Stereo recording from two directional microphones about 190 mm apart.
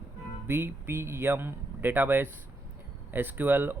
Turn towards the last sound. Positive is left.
turn(degrees=-10)  # may be behind; listen again after turning